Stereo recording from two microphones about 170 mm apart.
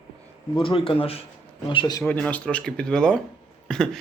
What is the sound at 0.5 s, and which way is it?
Speech, 30° left (ahead or behind).